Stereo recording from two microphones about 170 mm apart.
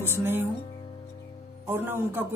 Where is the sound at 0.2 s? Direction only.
10° right (ahead or behind).